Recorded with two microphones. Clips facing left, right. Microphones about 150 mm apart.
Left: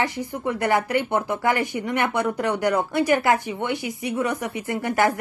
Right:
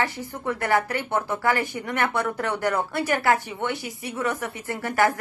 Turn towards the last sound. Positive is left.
turn(degrees=20)  # may be behind; listen again after turning